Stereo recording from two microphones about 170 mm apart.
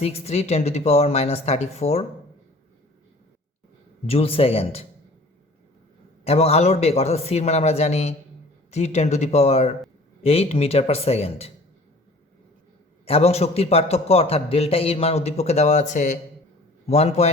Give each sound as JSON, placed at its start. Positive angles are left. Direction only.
{"t": 0.0, "sound": "a man's voice", "side_deg": 40}
{"t": 4.0, "sound": "a man's voice", "side_deg": 35}
{"t": 6.2, "sound": "a man's voice", "side_deg": 35}
{"t": 13.1, "sound": "a man's voice", "side_deg": 35}